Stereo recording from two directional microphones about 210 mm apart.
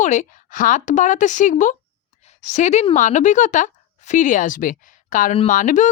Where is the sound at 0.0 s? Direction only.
35° left (ahead or behind).